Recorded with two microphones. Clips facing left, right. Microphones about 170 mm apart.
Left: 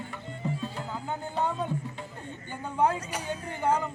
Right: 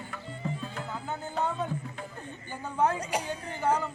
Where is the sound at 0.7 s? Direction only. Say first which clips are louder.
Left 1 dB; 15° left (ahead or behind).